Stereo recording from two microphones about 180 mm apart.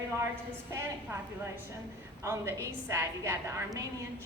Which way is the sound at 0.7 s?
15° right (ahead or behind).